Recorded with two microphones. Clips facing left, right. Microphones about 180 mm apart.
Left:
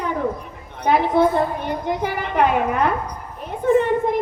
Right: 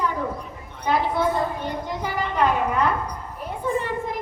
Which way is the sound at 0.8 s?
55° left (ahead or behind).